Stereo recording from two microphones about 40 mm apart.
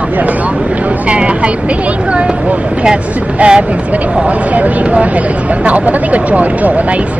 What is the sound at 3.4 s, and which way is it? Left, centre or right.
Speech, right.